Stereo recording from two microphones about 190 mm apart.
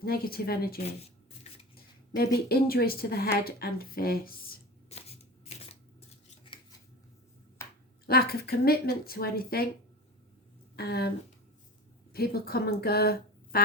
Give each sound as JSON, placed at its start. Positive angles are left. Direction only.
{"t": 0.0, "sound": "a woman's voice", "side_deg": 50}
{"t": 4.9, "sound": "shuffling cards", "side_deg": 35}
{"t": 7.6, "sound": "finger snapping", "side_deg": 15}
{"t": 8.0, "sound": "speech", "side_deg": 55}
{"t": 10.8, "sound": "speech", "side_deg": 55}
{"t": 12.1, "sound": "speech", "side_deg": 55}